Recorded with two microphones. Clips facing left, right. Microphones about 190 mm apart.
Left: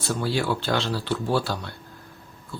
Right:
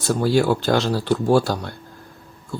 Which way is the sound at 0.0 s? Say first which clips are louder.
Right 7 dB; 45° right (ahead or behind).